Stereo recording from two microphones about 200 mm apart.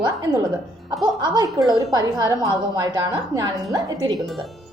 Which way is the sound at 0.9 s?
20° right (ahead or behind).